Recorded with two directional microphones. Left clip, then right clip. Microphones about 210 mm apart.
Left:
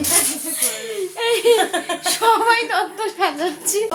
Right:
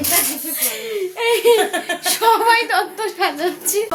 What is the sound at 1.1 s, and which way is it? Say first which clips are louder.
Speech: right 1 dB; 5° right (ahead or behind).